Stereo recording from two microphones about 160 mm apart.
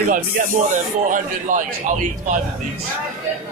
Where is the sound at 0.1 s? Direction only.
50° right (ahead or behind).